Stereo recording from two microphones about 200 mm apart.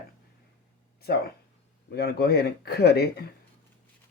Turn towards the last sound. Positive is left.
turn(degrees=55)  # may be behind; listen again after turning